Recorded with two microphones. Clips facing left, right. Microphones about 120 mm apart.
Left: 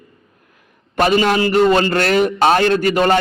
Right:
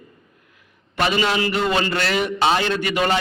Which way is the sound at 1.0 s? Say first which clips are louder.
Left 6 dB; 45° left (ahead or behind).